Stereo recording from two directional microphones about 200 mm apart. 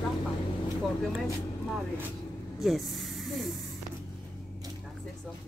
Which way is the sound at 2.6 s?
Centre (ahead or behind).